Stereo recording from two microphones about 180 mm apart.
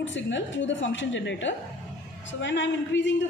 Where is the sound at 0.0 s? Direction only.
90° left.